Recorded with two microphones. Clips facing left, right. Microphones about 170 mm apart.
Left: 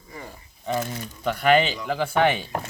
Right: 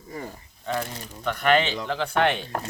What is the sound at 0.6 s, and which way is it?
Speech, 10° left (ahead or behind).